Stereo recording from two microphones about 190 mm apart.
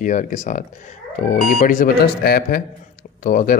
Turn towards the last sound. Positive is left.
turn(degrees=45)  # may be behind; listen again after turning